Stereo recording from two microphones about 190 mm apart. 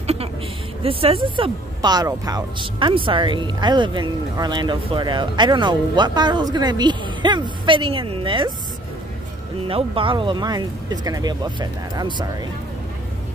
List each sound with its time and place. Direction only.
0.0 s a sound: 35° right (ahead or behind)
0.8 s speech: 30° right (ahead or behind)
9.7 s speech: 30° right (ahead or behind)